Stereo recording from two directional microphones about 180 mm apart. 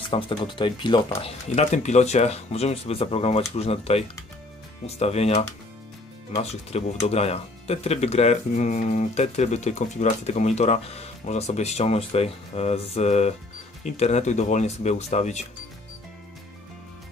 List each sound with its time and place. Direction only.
0.1 s speech: 30° left (ahead or behind)
1.5 s speech: 40° left (ahead or behind)